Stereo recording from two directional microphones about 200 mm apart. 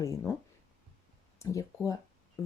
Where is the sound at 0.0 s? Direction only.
15° left (ahead or behind).